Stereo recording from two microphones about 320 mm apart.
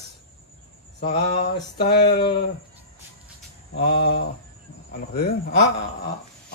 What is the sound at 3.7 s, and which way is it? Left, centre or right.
A man's voice, left.